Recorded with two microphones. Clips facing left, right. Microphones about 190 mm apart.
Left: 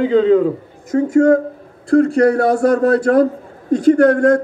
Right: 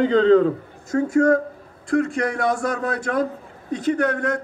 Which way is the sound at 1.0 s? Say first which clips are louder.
Left 5 dB; 25° left (ahead or behind).